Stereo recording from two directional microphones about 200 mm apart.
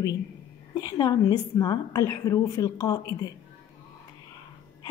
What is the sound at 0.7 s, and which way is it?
A woman's voice, 20° left (ahead or behind).